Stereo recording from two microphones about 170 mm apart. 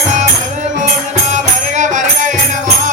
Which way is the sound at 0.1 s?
45° right (ahead or behind).